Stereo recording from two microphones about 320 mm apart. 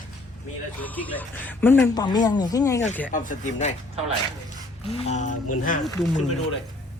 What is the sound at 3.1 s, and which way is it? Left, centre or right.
Speech, left.